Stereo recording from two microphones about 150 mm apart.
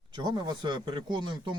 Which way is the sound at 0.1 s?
25° right (ahead or behind).